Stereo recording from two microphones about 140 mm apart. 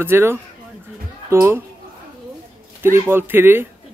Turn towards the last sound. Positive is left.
turn(degrees=-15)  # may be behind; listen again after turning